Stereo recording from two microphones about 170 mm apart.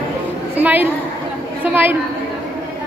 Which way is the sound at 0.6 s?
10° right (ahead or behind).